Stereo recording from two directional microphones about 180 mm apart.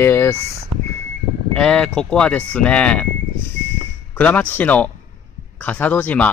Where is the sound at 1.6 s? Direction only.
5° left (ahead or behind).